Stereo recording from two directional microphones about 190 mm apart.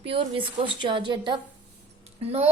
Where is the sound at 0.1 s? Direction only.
25° right (ahead or behind).